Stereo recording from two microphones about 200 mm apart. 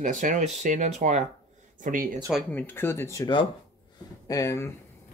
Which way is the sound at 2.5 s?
10° left (ahead or behind).